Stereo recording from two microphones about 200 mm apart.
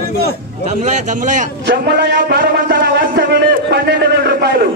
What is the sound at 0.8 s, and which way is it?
Speech, 40° right (ahead or behind).